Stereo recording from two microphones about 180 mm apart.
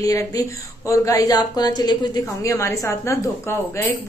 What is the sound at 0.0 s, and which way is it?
A woman's voice, 20° left (ahead or behind).